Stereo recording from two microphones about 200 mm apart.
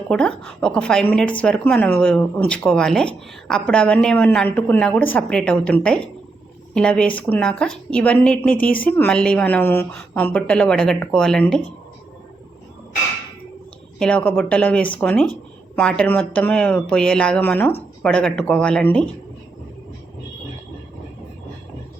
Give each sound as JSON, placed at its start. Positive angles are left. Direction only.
{"t": 0.1, "sound": "a woman's voice", "side_deg": 5}
{"t": 14.0, "sound": "a woman's voice", "side_deg": 5}